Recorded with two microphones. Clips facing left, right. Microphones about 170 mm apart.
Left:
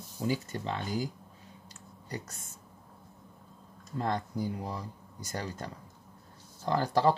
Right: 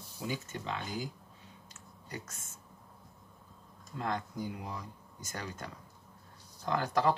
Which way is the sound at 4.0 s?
35° left (ahead or behind).